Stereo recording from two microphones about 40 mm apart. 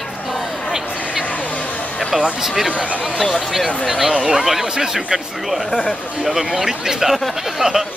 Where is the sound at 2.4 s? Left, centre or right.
Centre.